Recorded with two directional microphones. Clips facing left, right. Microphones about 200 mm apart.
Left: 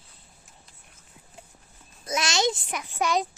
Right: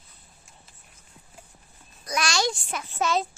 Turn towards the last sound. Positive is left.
turn(degrees=15)  # may be behind; listen again after turning